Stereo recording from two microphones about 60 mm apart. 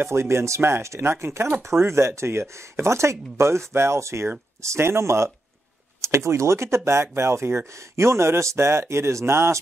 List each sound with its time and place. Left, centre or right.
0.0 s speech: right